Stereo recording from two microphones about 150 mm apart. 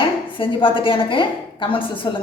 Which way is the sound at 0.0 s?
35° left (ahead or behind).